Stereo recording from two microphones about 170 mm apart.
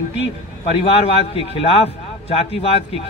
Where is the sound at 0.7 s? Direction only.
35° left (ahead or behind).